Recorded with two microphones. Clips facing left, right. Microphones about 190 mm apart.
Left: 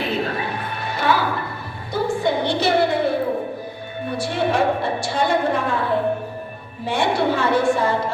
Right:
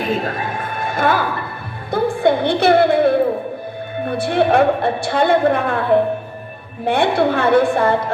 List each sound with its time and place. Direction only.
0.0 s a sound: 45° right (ahead or behind)
4.0 s a woman's voice: 55° right (ahead or behind)
6.8 s a woman's voice: 55° right (ahead or behind)